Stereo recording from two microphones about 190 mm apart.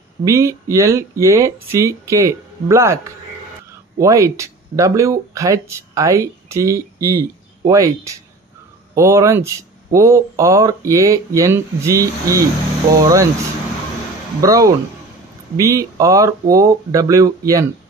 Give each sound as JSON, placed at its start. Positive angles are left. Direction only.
{"t": 0.2, "sound": "speech", "side_deg": -15}
{"t": 4.0, "sound": "speech", "side_deg": -15}
{"t": 14.4, "sound": "speech", "side_deg": -20}